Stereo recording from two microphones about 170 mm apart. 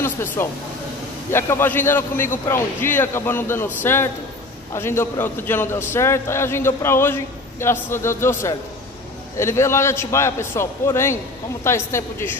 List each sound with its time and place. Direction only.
0.4 s a man's voice: 15° left (ahead or behind)